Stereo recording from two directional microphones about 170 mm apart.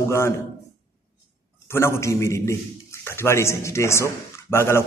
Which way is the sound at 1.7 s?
15° left (ahead or behind).